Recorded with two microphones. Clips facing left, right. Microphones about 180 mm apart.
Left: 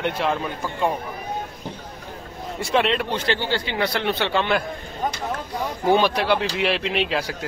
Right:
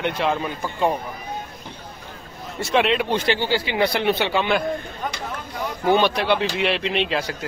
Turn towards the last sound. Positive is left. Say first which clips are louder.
# even
turn(degrees=5)  # may be behind; listen again after turning